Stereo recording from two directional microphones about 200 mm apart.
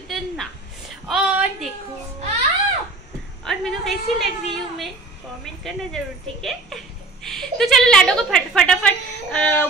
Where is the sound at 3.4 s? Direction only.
Centre (ahead or behind).